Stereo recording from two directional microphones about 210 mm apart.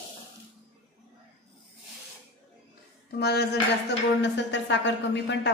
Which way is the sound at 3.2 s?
50° left (ahead or behind).